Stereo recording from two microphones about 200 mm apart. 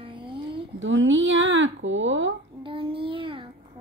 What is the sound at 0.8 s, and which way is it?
A woman's voice, 65° right (ahead or behind).